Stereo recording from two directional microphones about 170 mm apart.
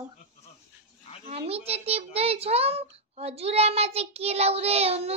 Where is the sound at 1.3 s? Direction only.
35° right (ahead or behind).